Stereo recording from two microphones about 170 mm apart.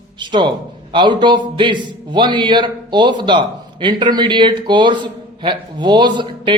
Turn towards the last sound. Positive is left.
turn(degrees=-25)  # may be behind; listen again after turning